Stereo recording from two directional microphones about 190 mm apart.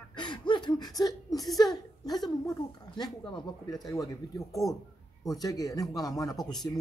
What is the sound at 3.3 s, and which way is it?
Speech, 20° left (ahead or behind).